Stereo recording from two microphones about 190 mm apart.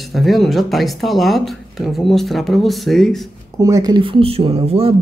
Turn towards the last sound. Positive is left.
turn(degrees=-30)  # may be behind; listen again after turning